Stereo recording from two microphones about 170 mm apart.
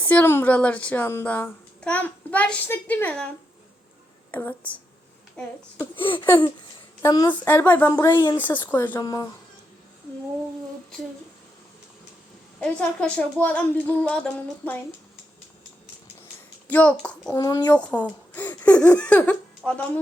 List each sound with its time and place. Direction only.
0.0 s a woman's voice: 10° left (ahead or behind)
6.0 s a sound: 30° left (ahead or behind)
7.0 s a woman's voice: 20° left (ahead or behind)
8.4 s a woman's voice: 10° left (ahead or behind)
9.0 s speech: 20° left (ahead or behind)
12.5 s a woman's voice: 5° left (ahead or behind)
16.6 s a woman's voice: 10° left (ahead or behind)
17.3 s speech: 25° left (ahead or behind)
18.0 s a woman's voice: 10° left (ahead or behind)